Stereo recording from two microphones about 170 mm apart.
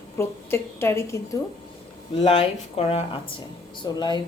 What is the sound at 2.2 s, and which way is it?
Speech, 35° left (ahead or behind).